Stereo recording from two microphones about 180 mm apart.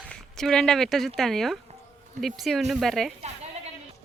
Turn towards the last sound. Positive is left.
turn(degrees=0)  # may be behind; listen again after turning